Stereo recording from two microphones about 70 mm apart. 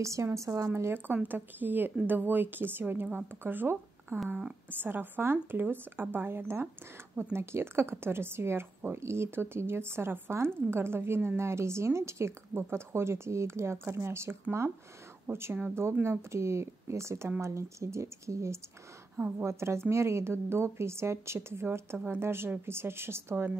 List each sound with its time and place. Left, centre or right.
0.0 s a woman's voice: right